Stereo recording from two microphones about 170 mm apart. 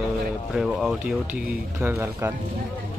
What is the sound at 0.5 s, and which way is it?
Speech, 5° right (ahead or behind).